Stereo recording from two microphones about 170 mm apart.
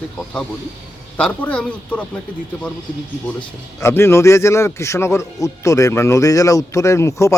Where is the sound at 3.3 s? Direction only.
15° left (ahead or behind).